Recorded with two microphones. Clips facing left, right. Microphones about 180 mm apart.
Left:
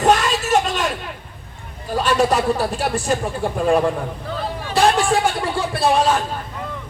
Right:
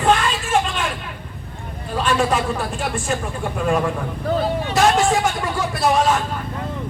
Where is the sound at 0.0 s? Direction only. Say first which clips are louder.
Left 2 dB; 40° left (ahead or behind).